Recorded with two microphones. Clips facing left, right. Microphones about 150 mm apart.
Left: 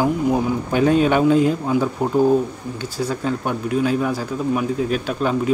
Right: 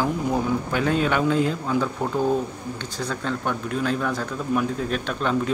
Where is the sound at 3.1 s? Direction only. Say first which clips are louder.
Left 2 dB; 10° left (ahead or behind).